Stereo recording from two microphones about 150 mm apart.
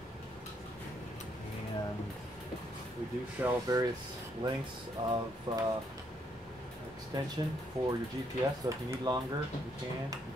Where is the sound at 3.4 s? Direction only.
25° right (ahead or behind).